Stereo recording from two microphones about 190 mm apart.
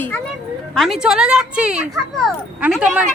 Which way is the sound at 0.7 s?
Centre (ahead or behind).